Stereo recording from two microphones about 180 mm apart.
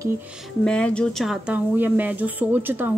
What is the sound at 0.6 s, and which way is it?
A woman's voice, 5° left (ahead or behind).